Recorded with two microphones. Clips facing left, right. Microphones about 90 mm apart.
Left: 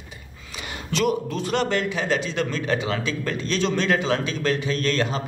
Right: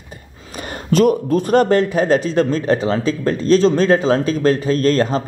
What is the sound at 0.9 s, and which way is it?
A man's voice, 45° right (ahead or behind).